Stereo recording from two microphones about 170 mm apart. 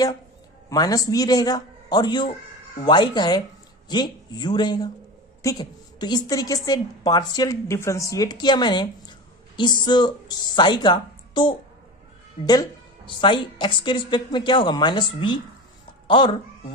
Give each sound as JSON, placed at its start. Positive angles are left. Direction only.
{"t": 0.7, "sound": "a woman's voice", "side_deg": 20}